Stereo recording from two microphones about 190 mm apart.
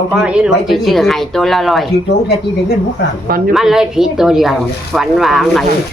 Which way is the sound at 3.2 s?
50° right (ahead or behind).